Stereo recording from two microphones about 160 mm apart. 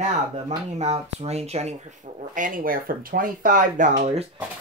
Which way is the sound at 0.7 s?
40° right (ahead or behind).